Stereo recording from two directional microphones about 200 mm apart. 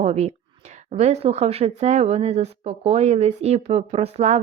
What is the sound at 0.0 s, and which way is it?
A woman's voice, 30° right (ahead or behind).